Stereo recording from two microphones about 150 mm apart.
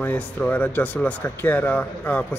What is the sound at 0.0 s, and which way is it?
Speech, 10° left (ahead or behind).